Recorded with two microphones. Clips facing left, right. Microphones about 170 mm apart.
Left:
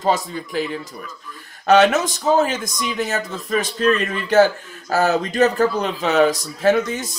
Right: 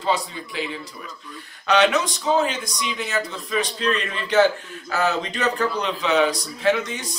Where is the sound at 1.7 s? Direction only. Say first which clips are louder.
Left 4 dB; 45° left (ahead or behind).